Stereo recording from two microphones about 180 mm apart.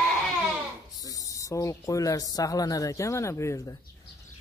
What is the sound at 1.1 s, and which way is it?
Speech, 20° left (ahead or behind).